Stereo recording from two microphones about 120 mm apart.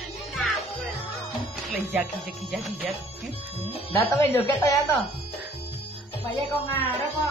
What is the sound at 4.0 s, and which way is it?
Speech, 20° left (ahead or behind).